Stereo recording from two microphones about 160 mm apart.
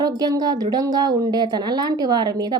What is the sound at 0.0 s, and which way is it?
A woman's voice, 25° right (ahead or behind).